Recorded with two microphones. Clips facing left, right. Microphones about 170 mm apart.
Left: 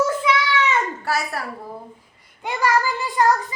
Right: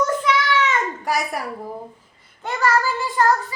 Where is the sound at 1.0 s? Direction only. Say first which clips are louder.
Right 1 dB; 15° right (ahead or behind).